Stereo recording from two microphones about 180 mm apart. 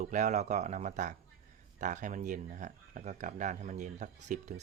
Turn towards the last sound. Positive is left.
turn(degrees=-40)  # may be behind; listen again after turning